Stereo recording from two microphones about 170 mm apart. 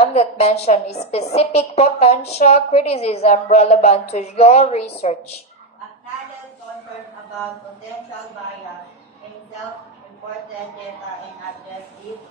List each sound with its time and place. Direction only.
0.0 s a woman's voice: 40° left (ahead or behind)